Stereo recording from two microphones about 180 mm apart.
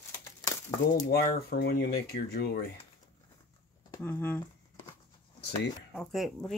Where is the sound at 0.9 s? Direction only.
60° left (ahead or behind).